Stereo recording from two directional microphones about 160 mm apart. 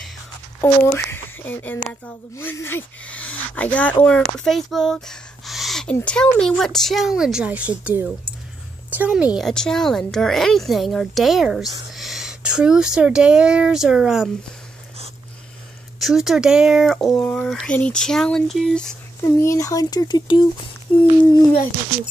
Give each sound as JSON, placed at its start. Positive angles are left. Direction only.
{"t": 0.6, "sound": "speech", "side_deg": 15}
{"t": 4.4, "sound": "a sound", "side_deg": 0}
{"t": 5.9, "sound": "a woman's voice", "side_deg": 5}
{"t": 16.0, "sound": "speech", "side_deg": 0}
{"t": 19.2, "sound": "speech", "side_deg": 20}